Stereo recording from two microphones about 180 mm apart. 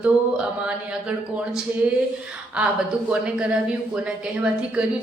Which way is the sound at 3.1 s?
5° right (ahead or behind).